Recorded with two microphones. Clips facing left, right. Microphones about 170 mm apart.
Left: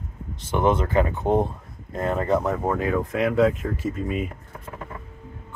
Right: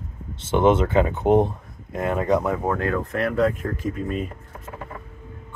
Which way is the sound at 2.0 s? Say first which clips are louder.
Right 1 dB; 5° right (ahead or behind).